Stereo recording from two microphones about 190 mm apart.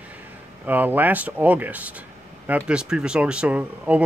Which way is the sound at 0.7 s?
10° right (ahead or behind).